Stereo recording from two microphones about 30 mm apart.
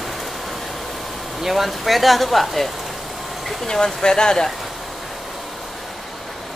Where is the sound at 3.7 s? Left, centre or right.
Left.